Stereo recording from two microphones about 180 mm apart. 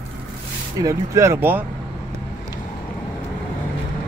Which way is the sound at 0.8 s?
15° right (ahead or behind).